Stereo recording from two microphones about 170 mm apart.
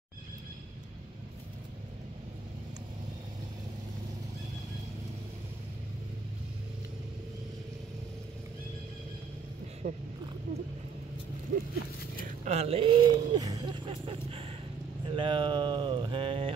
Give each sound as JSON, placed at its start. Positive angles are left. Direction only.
{"t": 9.8, "sound": "speech", "side_deg": -70}
{"t": 11.5, "sound": "speech", "side_deg": -55}
{"t": 12.4, "sound": "speech", "side_deg": -40}